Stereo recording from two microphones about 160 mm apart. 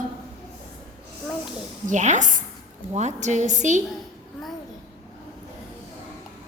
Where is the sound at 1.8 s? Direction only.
50° right (ahead or behind).